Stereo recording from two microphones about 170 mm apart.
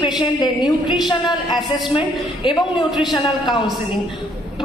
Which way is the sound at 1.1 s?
25° left (ahead or behind).